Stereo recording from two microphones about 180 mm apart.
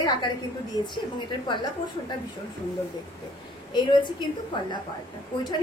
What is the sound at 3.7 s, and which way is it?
Speech, 25° left (ahead or behind).